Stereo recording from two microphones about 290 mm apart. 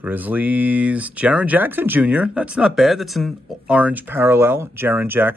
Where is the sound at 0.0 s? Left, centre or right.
Centre.